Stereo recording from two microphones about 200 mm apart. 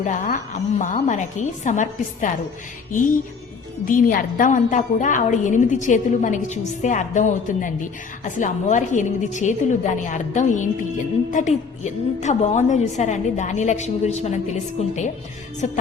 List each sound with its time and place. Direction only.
0.0 s a woman's voice: 40° left (ahead or behind)